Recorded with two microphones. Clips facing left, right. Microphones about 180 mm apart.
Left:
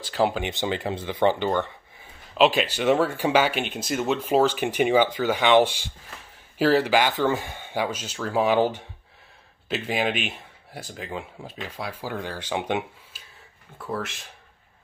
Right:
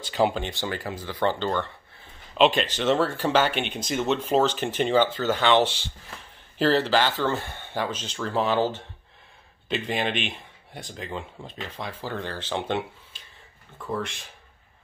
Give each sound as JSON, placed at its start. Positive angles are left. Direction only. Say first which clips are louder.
{"t": 0.0, "sound": "speech", "louder": "even", "side_deg": 0}
{"t": 0.4, "sound": "speech", "louder": "left 3 dB", "side_deg": 20}